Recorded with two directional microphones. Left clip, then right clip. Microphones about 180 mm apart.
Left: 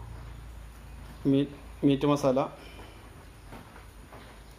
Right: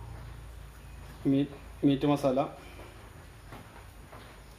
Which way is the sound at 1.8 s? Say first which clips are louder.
Left 2 dB; 35° left (ahead or behind).